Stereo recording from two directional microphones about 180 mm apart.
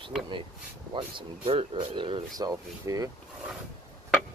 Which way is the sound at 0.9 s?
30° right (ahead or behind).